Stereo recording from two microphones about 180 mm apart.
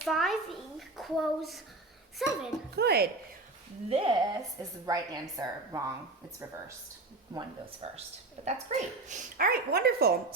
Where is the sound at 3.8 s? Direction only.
35° right (ahead or behind).